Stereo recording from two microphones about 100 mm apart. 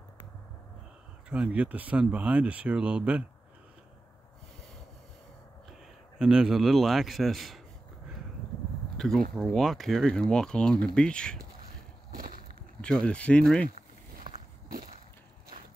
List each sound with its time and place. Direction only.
1.3 s speech: 10° right (ahead or behind)
6.1 s speech: 5° right (ahead or behind)
8.9 s speech: 5° left (ahead or behind)
12.8 s speech: 10° left (ahead or behind)
14.3 s walk: 55° right (ahead or behind)